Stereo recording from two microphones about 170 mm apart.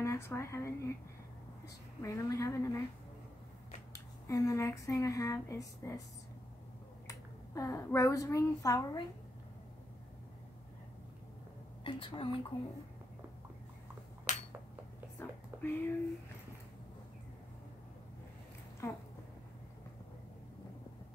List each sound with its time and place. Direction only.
0.0 s speech: 15° left (ahead or behind)
2.0 s speech: 20° left (ahead or behind)
3.9 s speech: 20° left (ahead or behind)
7.1 s speech: 20° left (ahead or behind)
11.8 s a woman's voice: 30° left (ahead or behind)
15.1 s speech: 10° left (ahead or behind)
18.8 s speech: 15° left (ahead or behind)